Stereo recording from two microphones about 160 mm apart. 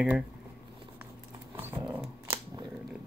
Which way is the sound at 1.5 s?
15° right (ahead or behind).